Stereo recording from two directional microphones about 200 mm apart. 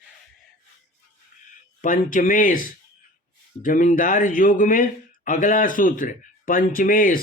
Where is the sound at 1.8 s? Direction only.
40° left (ahead or behind).